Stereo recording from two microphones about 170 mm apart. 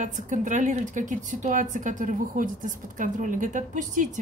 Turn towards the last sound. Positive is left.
turn(degrees=-50)  # may be behind; listen again after turning